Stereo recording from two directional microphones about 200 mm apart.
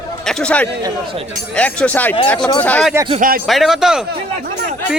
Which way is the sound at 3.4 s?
Centre (ahead or behind).